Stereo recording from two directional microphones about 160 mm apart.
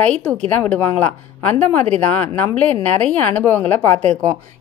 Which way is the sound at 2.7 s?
45° right (ahead or behind).